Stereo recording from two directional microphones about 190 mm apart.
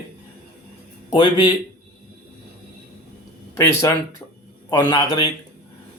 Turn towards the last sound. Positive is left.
turn(degrees=20)  # may be behind; listen again after turning